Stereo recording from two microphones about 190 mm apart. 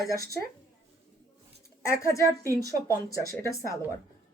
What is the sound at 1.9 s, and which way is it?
Speech, 15° left (ahead or behind).